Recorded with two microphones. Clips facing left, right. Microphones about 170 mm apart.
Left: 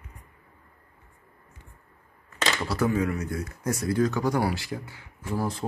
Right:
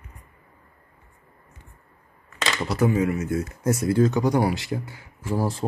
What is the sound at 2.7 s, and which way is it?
Speech, 15° right (ahead or behind).